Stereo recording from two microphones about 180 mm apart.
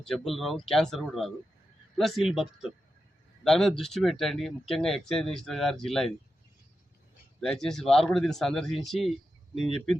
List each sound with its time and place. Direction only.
0.0 s speech: centre (ahead or behind)
7.4 s speech: 5° left (ahead or behind)